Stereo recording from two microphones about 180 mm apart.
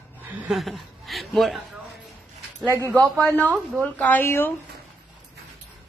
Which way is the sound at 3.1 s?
10° left (ahead or behind).